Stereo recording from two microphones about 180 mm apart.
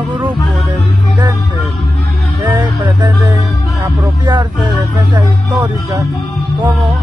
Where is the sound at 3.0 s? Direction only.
25° right (ahead or behind).